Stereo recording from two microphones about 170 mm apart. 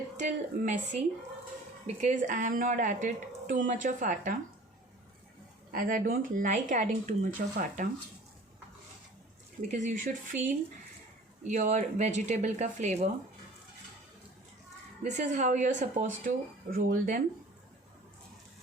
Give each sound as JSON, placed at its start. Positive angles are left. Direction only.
{"t": 0.2, "sound": "speech", "side_deg": -45}
{"t": 5.7, "sound": "speech", "side_deg": -55}
{"t": 9.6, "sound": "speech", "side_deg": -50}
{"t": 15.0, "sound": "speech", "side_deg": -45}